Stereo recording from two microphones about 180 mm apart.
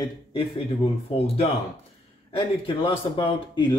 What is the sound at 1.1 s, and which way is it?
Speech, 35° left (ahead or behind).